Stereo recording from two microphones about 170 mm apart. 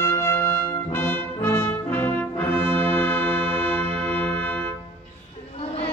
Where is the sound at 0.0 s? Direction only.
15° left (ahead or behind).